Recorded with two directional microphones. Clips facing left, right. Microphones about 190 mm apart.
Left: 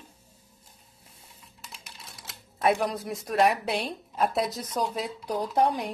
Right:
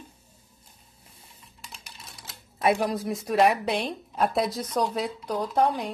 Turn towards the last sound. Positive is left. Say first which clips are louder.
# right 1 dB
turn(degrees=10)  # may be behind; listen again after turning